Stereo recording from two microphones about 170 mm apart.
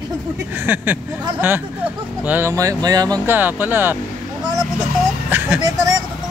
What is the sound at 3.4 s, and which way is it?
Speech, 10° right (ahead or behind).